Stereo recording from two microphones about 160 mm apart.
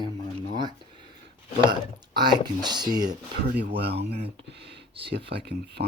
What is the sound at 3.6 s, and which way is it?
Speech, 85° right.